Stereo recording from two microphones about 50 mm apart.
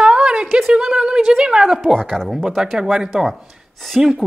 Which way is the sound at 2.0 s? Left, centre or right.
Centre.